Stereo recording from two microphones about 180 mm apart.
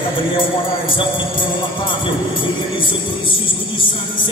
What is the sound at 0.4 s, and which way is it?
Speech, 30° left (ahead or behind).